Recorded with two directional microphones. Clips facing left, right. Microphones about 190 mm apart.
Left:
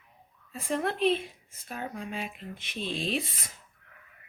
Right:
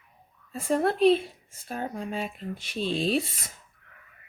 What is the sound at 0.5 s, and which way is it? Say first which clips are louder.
Speech: right 5 dB; 40° right (ahead or behind).